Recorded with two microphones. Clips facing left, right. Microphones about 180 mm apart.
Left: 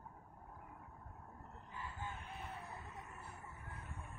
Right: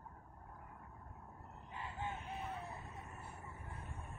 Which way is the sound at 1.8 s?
20° right (ahead or behind).